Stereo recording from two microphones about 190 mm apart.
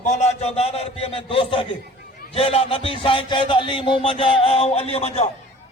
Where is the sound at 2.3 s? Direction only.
30° left (ahead or behind).